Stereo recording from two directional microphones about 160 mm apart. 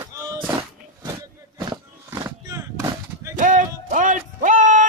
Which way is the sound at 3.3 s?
55° right (ahead or behind).